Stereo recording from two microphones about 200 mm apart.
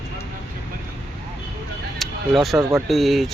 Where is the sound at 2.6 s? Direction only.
15° right (ahead or behind).